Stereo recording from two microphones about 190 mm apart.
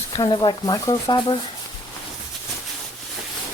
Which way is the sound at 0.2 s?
25° left (ahead or behind).